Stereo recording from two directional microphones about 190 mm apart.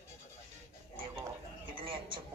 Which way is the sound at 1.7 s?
25° right (ahead or behind).